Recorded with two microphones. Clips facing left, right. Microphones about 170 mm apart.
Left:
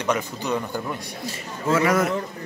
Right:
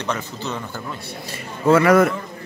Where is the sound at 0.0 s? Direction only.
10° left (ahead or behind).